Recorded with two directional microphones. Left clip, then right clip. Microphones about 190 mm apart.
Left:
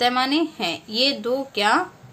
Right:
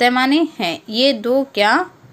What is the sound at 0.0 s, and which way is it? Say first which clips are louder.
A woman's voice: right 5 dB; 35° right (ahead or behind).